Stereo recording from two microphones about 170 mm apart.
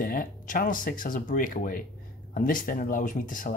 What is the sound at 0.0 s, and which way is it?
Speech, 55° left (ahead or behind).